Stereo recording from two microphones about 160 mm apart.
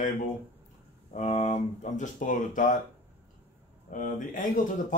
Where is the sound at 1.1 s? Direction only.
50° left (ahead or behind).